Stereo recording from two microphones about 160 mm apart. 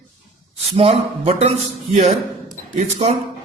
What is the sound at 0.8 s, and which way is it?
Speech, 40° right (ahead or behind).